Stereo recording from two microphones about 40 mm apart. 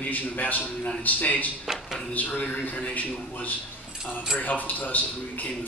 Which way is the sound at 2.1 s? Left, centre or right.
Left.